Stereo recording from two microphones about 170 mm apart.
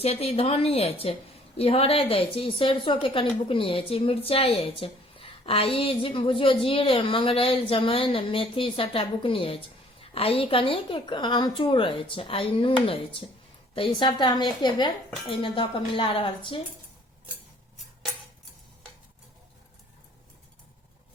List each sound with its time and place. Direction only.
0.0 s a woman's voice: 35° left (ahead or behind)